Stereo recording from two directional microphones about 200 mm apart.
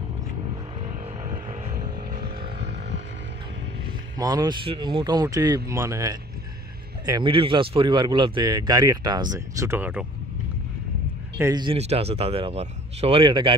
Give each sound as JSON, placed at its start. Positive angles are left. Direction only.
{"t": 0.7, "sound": "vehicle", "side_deg": -35}
{"t": 4.2, "sound": "speech", "side_deg": -20}
{"t": 11.3, "sound": "speech", "side_deg": -15}